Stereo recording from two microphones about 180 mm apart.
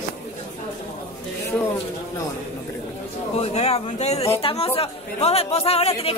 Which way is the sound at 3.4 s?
35° left (ahead or behind).